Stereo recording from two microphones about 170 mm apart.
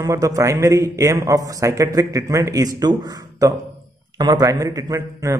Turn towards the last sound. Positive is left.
turn(degrees=-20)  # may be behind; listen again after turning